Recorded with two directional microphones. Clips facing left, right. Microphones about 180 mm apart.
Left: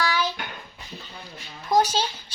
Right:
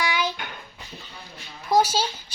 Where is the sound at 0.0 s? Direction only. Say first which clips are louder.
Even; 15° right (ahead or behind).